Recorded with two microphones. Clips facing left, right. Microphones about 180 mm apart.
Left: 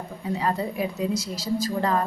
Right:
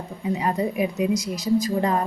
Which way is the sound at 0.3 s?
20° right (ahead or behind).